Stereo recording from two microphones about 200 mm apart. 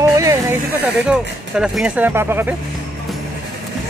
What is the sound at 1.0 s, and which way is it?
Speech, 5° right (ahead or behind).